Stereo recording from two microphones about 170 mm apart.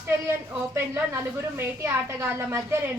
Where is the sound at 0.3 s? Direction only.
15° right (ahead or behind).